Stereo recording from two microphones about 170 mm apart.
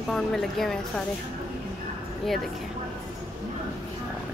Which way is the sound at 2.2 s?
Centre (ahead or behind).